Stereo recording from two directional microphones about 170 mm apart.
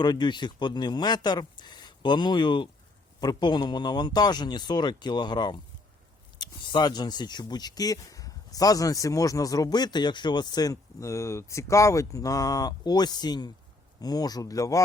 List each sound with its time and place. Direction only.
0.0 s speech: 25° left (ahead or behind)